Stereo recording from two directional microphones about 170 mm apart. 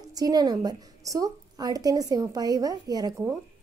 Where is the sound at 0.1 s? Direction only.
20° right (ahead or behind).